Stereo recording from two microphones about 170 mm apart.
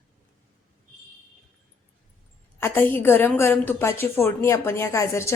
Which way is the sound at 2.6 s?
10° left (ahead or behind).